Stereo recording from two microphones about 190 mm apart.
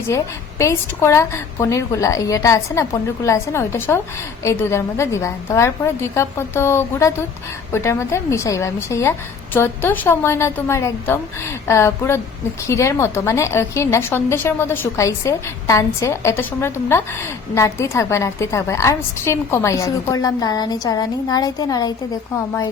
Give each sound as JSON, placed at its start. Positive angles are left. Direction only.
{"t": 0.6, "sound": "a woman's voice", "side_deg": 15}